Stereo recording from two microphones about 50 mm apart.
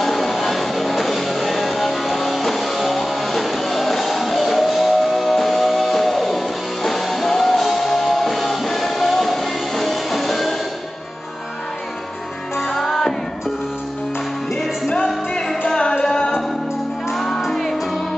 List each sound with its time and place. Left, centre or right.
0.0 s music: centre
12.6 s music: centre
15.3 s music: centre
17.1 s music: centre